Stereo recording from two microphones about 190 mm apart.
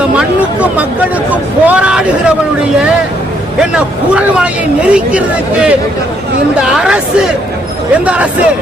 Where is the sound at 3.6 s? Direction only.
5° right (ahead or behind).